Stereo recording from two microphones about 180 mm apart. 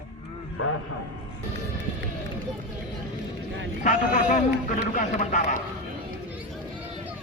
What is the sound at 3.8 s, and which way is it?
A man's voice, 45° left (ahead or behind).